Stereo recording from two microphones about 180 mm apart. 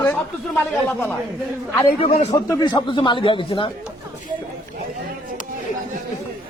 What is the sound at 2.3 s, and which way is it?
Speech, 20° left (ahead or behind).